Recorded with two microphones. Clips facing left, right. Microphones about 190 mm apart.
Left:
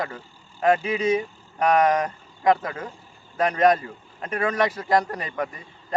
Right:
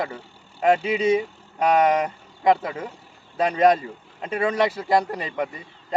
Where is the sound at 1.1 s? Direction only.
10° right (ahead or behind).